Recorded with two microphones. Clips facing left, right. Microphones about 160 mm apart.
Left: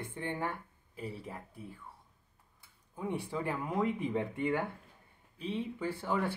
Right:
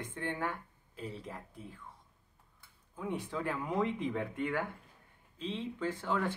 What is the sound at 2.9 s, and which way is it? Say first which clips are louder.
Speech: left 1 dB; 15° left (ahead or behind).